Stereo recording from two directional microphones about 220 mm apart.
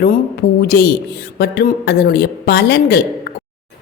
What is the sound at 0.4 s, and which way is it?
A woman's voice, 50° left (ahead or behind).